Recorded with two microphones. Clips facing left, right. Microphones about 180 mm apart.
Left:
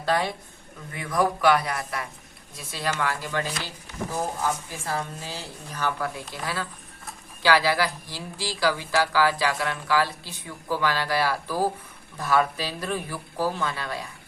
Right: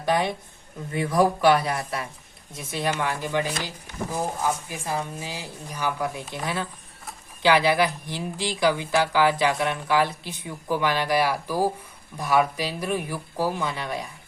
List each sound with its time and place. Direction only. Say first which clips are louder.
0.0 s speech: right 2 dB; 20° right (ahead or behind)